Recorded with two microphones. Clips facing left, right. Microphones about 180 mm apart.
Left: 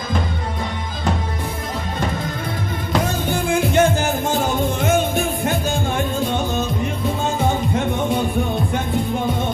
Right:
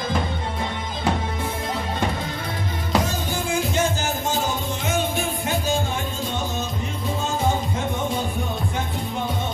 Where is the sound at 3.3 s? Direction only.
60° left (ahead or behind).